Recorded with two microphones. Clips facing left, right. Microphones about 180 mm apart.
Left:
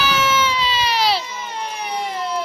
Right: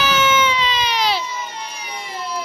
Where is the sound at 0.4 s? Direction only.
5° left (ahead or behind).